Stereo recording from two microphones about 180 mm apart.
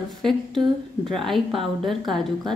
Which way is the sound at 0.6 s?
30° right (ahead or behind).